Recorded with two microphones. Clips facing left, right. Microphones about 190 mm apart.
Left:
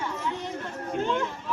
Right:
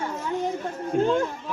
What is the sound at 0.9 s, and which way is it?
Speech, 45° right (ahead or behind).